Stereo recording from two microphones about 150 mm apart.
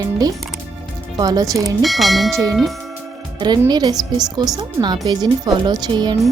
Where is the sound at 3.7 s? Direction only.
25° right (ahead or behind).